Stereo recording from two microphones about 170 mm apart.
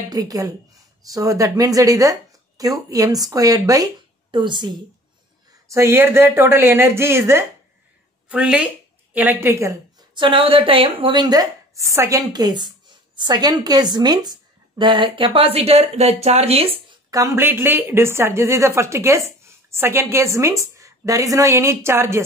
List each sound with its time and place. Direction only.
0.1 s a woman's voice: 20° right (ahead or behind)
5.7 s speech: 15° right (ahead or behind)
10.1 s a woman's voice: 30° right (ahead or behind)
17.1 s a woman's voice: 15° right (ahead or behind)